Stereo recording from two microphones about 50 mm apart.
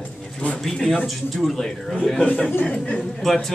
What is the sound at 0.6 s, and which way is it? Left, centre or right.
Speech, centre.